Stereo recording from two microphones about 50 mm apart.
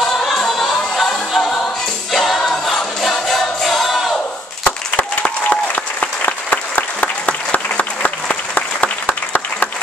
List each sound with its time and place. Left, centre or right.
0.0 s music: centre
2.1 s choir: centre
4.6 s a sound: left
5.5 s applause: left